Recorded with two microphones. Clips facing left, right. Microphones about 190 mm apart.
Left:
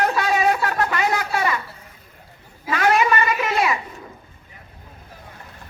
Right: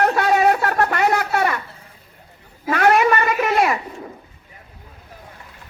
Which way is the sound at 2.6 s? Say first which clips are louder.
Right 3 dB; 60° right (ahead or behind).